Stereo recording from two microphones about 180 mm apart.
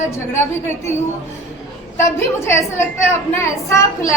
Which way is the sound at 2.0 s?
15° left (ahead or behind).